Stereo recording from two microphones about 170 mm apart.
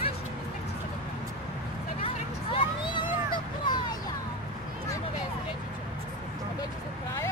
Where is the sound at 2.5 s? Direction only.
30° left (ahead or behind).